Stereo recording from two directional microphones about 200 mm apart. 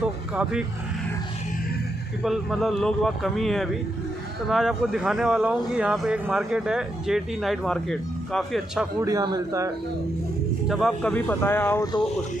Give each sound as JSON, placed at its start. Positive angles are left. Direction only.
{"t": 0.0, "sound": "vehicle", "side_deg": -5}
{"t": 2.2, "sound": "speech", "side_deg": 0}
{"t": 9.0, "sound": "a man's voice", "side_deg": -20}
{"t": 10.7, "sound": "speech", "side_deg": 5}